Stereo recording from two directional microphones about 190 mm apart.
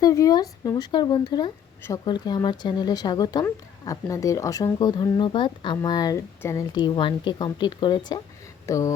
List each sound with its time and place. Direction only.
0.0 s speech: 20° left (ahead or behind)